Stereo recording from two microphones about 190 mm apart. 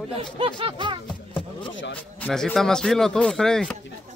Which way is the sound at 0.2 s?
30° right (ahead or behind).